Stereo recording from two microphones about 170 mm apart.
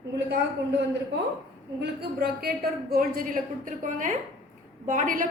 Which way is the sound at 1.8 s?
65° right (ahead or behind).